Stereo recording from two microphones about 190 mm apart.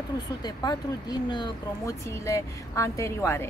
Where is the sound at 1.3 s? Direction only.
20° left (ahead or behind).